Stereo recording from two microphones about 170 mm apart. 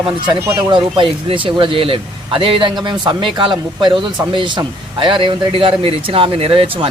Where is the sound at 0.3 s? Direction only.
15° right (ahead or behind).